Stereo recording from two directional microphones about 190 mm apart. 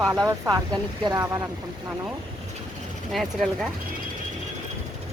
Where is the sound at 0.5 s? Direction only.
20° right (ahead or behind).